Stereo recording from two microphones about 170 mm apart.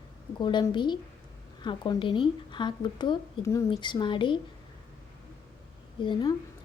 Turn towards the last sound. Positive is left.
turn(degrees=30)  # may be behind; listen again after turning